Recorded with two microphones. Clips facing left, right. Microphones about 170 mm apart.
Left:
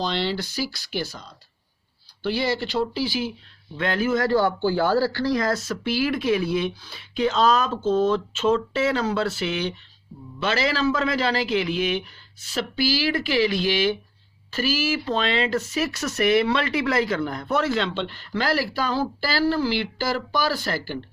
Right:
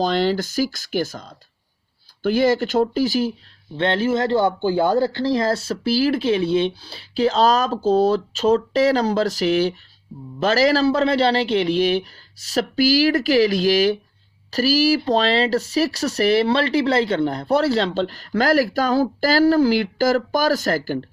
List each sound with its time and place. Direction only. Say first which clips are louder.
0.0 s speech: right 6 dB; 45° right (ahead or behind)
3.8 s speech: right 3 dB; 30° right (ahead or behind)
10.1 s a man's voice: right 5 dB; centre (ahead or behind)
10.4 s speech: right 6 dB; 40° right (ahead or behind)